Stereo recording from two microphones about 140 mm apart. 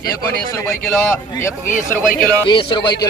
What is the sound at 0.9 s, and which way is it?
Speech, 15° left (ahead or behind).